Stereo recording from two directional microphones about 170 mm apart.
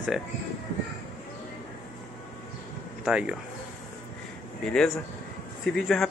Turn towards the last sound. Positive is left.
turn(degrees=5)  # may be behind; listen again after turning